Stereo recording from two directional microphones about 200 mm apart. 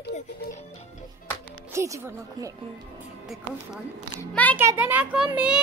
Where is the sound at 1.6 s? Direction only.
15° right (ahead or behind).